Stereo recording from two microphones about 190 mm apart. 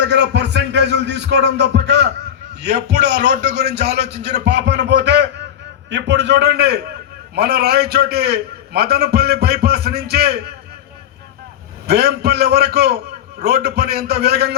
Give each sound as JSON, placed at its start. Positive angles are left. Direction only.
{"t": 0.0, "sound": "a man's voice", "side_deg": -65}
{"t": 11.9, "sound": "a man's voice", "side_deg": -55}